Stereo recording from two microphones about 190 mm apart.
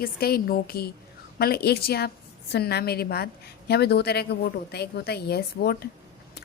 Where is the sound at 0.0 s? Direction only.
55° left (ahead or behind).